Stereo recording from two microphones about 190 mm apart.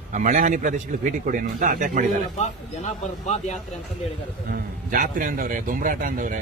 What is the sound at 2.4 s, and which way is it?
Speech, 35° left (ahead or behind).